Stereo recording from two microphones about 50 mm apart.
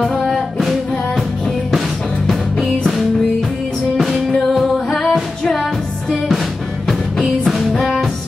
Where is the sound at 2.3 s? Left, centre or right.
Centre.